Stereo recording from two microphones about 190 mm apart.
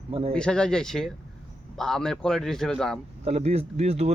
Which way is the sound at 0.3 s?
5° left (ahead or behind).